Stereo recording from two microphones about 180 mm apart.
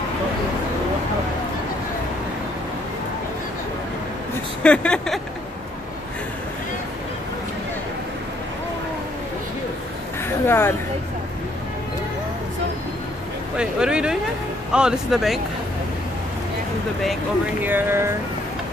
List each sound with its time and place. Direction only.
4.6 s speech: 5° left (ahead or behind)
10.2 s a sound: 15° left (ahead or behind)
13.6 s speech: 5° right (ahead or behind)
17.6 s speech: 10° right (ahead or behind)